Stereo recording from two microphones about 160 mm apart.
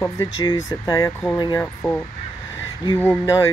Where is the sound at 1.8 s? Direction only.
5° left (ahead or behind).